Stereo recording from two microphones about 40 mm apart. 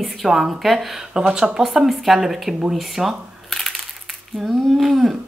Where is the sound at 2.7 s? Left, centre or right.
Centre.